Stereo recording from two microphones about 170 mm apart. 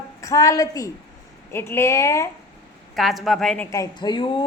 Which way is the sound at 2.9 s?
Centre (ahead or behind).